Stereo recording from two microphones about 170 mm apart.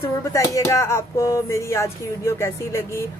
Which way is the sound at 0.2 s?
15° left (ahead or behind).